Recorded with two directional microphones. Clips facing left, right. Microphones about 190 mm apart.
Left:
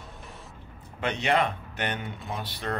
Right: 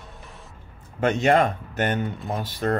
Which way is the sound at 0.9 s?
45° right (ahead or behind).